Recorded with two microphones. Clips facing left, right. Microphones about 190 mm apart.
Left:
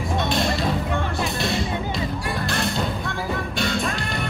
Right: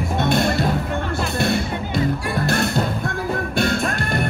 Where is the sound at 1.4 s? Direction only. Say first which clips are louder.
Right 3 dB; 55° right (ahead or behind).